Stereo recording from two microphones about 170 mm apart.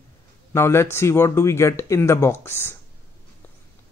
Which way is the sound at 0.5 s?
15° left (ahead or behind).